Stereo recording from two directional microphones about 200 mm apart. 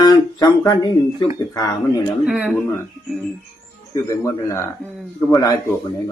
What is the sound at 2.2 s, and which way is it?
Speech, 5° right (ahead or behind).